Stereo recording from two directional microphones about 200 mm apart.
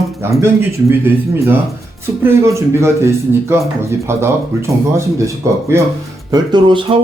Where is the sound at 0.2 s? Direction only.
10° right (ahead or behind).